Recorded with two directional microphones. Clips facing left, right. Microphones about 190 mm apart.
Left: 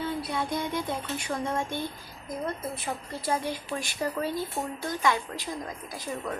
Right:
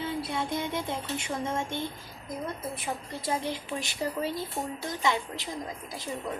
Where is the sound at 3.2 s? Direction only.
20° right (ahead or behind).